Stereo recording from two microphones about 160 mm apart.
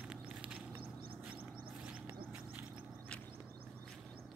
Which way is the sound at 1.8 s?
10° right (ahead or behind).